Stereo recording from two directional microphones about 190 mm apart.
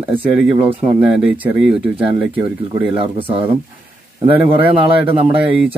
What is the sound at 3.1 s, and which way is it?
Speech, 30° right (ahead or behind).